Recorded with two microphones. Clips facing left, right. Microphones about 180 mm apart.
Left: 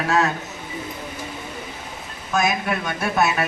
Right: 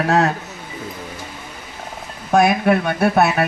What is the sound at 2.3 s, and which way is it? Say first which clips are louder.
A man's voice: right 8 dB; 60° right (ahead or behind).